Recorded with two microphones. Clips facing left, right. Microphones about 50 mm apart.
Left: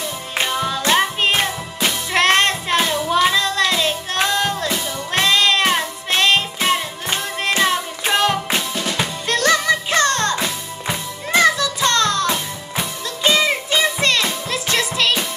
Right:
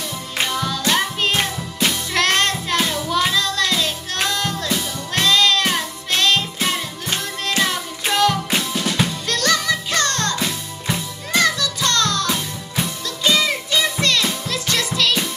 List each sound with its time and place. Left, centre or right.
0.4 s music: centre
8.5 s music: centre
9.3 s music: centre